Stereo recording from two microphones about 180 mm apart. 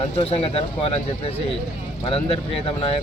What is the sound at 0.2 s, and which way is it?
Speech, 30° left (ahead or behind).